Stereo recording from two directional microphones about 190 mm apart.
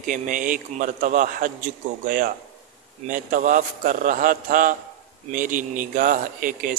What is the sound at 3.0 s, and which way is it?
A man's voice, 45° right (ahead or behind).